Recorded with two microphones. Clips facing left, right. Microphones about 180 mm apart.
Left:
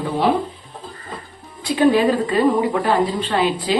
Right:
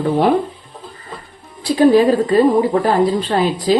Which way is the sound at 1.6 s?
35° right (ahead or behind).